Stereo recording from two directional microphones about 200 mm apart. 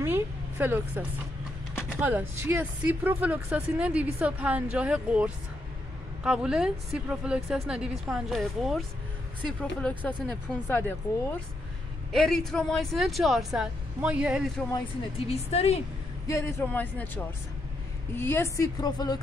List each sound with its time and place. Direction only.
0.0 s vehicle: 10° right (ahead or behind)
2.0 s a woman's voice: 10° right (ahead or behind); by 11.0 s 10° left (ahead or behind)
12.1 s a woman's voice: centre (ahead or behind)
14.7 s speech: 30° left (ahead or behind)
16.3 s a woman's voice: 15° left (ahead or behind)